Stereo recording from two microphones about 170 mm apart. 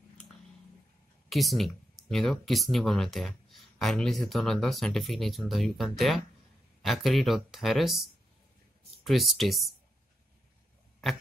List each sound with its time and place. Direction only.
1.3 s speech: centre (ahead or behind)